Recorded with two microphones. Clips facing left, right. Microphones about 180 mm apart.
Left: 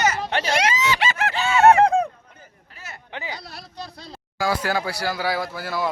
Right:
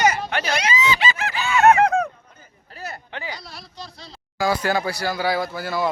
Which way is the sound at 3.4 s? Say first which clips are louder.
Left 2 dB; 55° left (ahead or behind).